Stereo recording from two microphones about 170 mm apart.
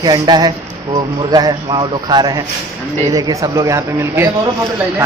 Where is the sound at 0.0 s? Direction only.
25° right (ahead or behind).